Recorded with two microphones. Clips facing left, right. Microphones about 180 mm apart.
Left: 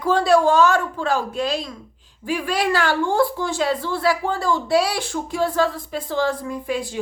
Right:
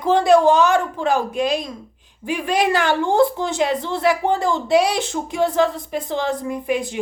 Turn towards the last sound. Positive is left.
turn(degrees=-20)  # may be behind; listen again after turning